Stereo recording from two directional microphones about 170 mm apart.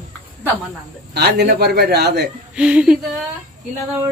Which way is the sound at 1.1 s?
75° right (ahead or behind).